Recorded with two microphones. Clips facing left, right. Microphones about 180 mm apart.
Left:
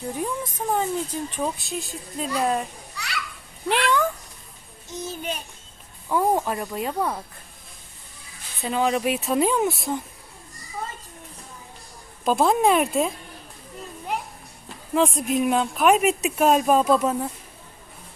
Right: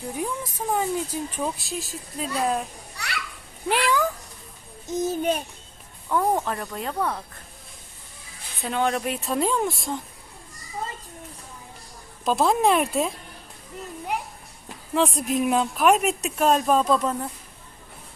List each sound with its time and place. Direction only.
0.2 s a woman's voice: 5° right (ahead or behind)
3.7 s speech: 5° right (ahead or behind)
4.9 s a child's voice: 50° right (ahead or behind)
6.1 s speech: 10° left (ahead or behind)
8.6 s a woman's voice: centre (ahead or behind)
12.2 s a woman's voice: centre (ahead or behind)
14.9 s a woman's voice: centre (ahead or behind)